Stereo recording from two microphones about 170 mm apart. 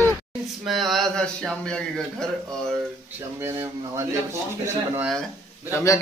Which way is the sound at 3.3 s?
15° right (ahead or behind).